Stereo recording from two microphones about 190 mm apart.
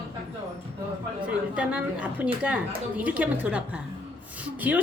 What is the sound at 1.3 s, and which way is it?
A woman's voice, 5° right (ahead or behind).